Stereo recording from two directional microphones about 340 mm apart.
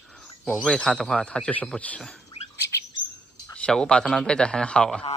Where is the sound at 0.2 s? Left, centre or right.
Centre.